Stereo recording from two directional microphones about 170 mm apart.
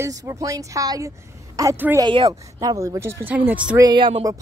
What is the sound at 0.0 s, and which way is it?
A woman's voice, 20° right (ahead or behind).